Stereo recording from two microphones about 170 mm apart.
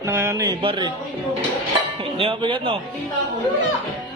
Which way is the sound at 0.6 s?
30° right (ahead or behind).